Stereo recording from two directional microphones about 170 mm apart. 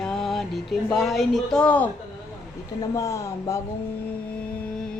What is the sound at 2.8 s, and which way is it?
Speech, 20° left (ahead or behind).